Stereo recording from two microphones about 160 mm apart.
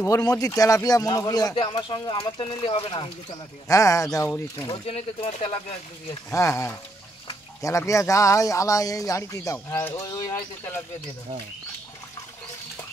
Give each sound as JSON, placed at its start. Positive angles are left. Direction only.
{"t": 0.0, "sound": "speech", "side_deg": 20}
{"t": 4.6, "sound": "speech", "side_deg": 40}
{"t": 6.3, "sound": "speech", "side_deg": 20}